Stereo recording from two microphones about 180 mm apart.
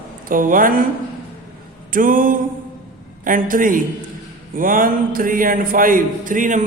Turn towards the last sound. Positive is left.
turn(degrees=-45)  # may be behind; listen again after turning